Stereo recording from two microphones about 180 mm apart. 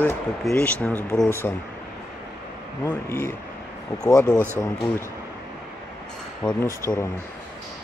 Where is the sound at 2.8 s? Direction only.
15° left (ahead or behind).